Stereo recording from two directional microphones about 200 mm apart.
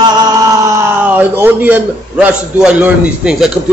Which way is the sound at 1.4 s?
10° right (ahead or behind).